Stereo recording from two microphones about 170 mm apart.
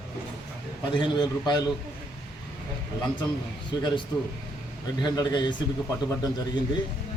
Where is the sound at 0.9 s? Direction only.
25° left (ahead or behind).